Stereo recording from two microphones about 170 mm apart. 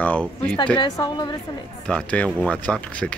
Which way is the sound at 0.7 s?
25° left (ahead or behind).